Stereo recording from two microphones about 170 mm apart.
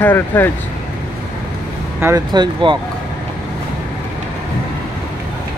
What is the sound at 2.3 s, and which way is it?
Speech, 30° right (ahead or behind).